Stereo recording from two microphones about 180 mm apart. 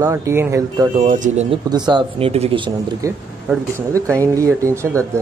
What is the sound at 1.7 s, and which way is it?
Speech, 25° right (ahead or behind).